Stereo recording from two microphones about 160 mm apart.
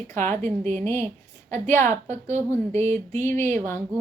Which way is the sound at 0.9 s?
15° left (ahead or behind).